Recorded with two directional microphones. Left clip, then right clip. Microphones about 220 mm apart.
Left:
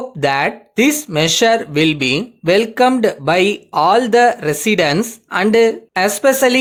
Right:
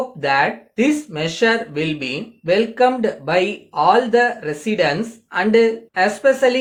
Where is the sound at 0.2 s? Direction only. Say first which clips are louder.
Left 2 dB; 50° left (ahead or behind).